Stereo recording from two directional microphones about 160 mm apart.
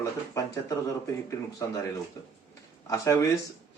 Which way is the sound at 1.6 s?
20° left (ahead or behind).